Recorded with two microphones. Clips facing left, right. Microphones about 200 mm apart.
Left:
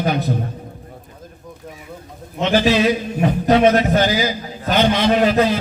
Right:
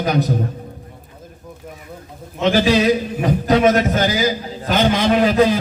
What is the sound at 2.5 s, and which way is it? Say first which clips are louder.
A man's voice: right 1 dB; 40° right (ahead or behind).